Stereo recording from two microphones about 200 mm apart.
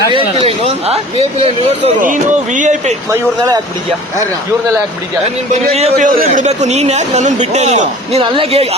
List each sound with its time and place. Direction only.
0.4 s speech: 30° right (ahead or behind)
2.0 s a man's voice: 40° right (ahead or behind)
3.1 s speech: 15° right (ahead or behind)
6.0 s a man's voice: 40° right (ahead or behind)